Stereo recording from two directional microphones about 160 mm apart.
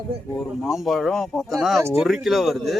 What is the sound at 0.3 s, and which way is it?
A man's voice, centre (ahead or behind).